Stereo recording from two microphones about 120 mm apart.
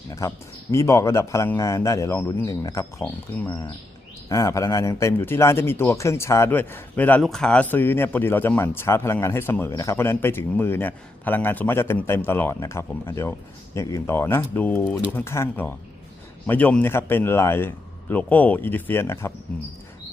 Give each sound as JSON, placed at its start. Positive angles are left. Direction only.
{"t": 0.1, "sound": "speech", "side_deg": 25}
{"t": 4.3, "sound": "speech", "side_deg": 25}
{"t": 7.2, "sound": "speech", "side_deg": 5}